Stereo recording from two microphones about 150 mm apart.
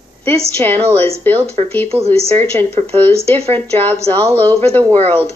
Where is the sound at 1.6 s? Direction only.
45° right (ahead or behind).